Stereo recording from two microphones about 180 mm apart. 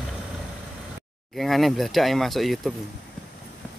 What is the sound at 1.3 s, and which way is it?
Speech, centre (ahead or behind).